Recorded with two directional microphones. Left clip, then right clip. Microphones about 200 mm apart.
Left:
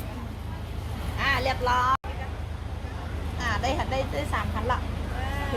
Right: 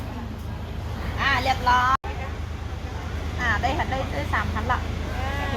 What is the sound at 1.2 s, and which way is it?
Vehicle, 50° left (ahead or behind).